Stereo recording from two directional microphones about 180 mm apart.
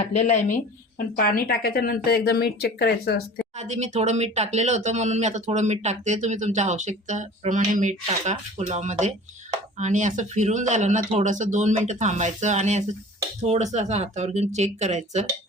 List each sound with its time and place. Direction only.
0.1 s speech: 40° left (ahead or behind)
0.9 s a woman's voice: 55° left (ahead or behind)
3.6 s speech: 40° right (ahead or behind)